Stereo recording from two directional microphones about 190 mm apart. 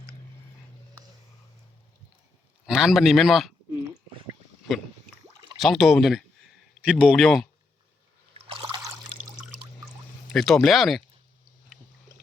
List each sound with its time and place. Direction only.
2.6 s speech: centre (ahead or behind)
5.5 s speech: centre (ahead or behind)
8.3 s a sound: 30° right (ahead or behind)
10.3 s speech: centre (ahead or behind)